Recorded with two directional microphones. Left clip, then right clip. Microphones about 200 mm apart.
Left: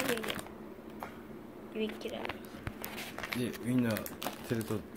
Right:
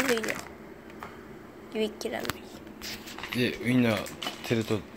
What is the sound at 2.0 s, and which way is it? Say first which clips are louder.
Speech: right 7 dB; 90° right.